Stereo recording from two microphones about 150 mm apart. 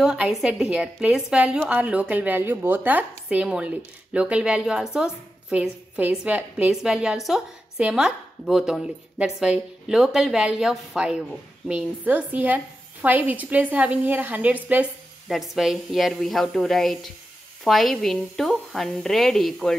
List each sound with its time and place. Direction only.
0.0 s a woman's voice: 5° right (ahead or behind)